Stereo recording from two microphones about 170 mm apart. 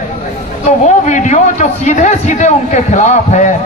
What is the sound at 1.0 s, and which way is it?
A man's voice, 45° left (ahead or behind).